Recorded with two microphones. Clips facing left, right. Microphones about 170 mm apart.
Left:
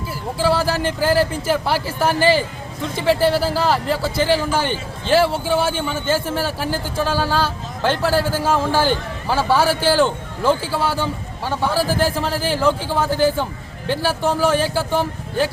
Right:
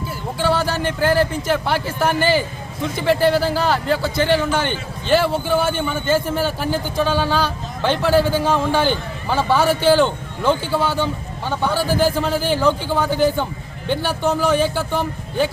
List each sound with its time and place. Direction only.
0.3 s a man's voice: 5° left (ahead or behind)